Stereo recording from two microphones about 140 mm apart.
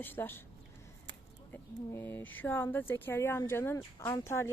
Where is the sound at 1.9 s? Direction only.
15° left (ahead or behind).